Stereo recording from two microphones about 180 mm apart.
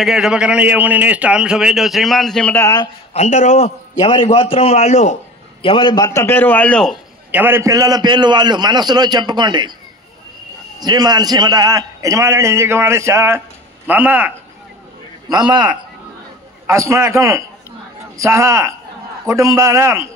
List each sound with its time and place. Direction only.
0.0 s a man's voice: centre (ahead or behind); by 2.9 s 15° left (ahead or behind)
3.1 s a man's voice: 40° left (ahead or behind); by 7.0 s 5° left (ahead or behind)
7.2 s a man's voice: 10° right (ahead or behind)
10.8 s a man's voice: 20° right (ahead or behind)
15.2 s a man's voice: 20° right (ahead or behind)